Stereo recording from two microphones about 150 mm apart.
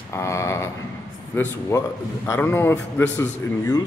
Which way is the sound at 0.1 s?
20° left (ahead or behind).